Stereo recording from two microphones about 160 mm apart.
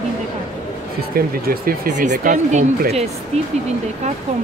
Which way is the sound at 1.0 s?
70° right (ahead or behind).